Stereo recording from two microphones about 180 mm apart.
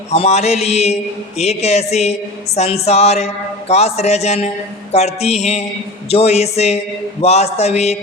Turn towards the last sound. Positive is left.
turn(degrees=35)  # may be behind; listen again after turning